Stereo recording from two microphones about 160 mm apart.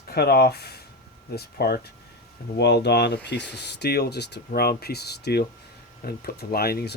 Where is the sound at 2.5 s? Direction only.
90° left.